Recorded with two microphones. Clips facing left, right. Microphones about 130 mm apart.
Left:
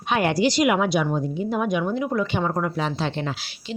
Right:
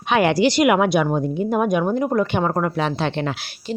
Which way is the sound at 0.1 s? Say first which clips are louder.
Right 4 dB; 90° right.